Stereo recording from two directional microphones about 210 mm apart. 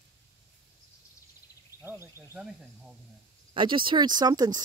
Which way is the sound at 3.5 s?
25° right (ahead or behind).